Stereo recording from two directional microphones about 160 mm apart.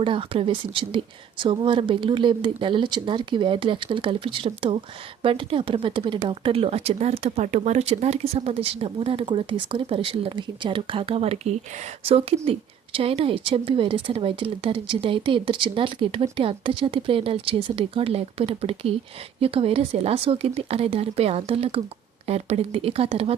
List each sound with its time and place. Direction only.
0.0 s a woman's voice: 35° right (ahead or behind)